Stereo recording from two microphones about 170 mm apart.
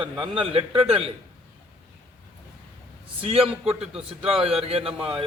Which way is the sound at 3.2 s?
30° right (ahead or behind).